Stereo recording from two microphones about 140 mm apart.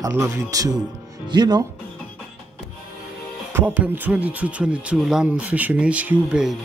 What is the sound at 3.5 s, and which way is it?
Speech, 10° right (ahead or behind).